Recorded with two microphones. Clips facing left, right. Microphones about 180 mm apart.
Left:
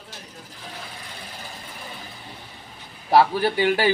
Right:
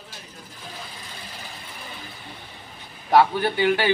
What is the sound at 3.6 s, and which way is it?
Speech, 40° left (ahead or behind).